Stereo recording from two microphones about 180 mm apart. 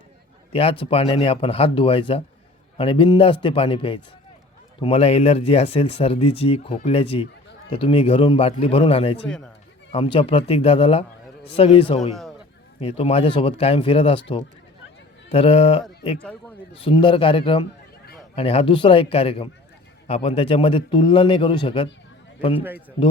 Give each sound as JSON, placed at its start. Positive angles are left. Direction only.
{"t": 0.5, "sound": "a man's voice", "side_deg": 30}
{"t": 9.2, "sound": "speech", "side_deg": 5}
{"t": 9.9, "sound": "a man's voice", "side_deg": 30}
{"t": 15.3, "sound": "a man's voice", "side_deg": 35}